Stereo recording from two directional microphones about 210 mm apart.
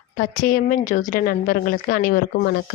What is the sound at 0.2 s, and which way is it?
A woman's voice, 40° left (ahead or behind).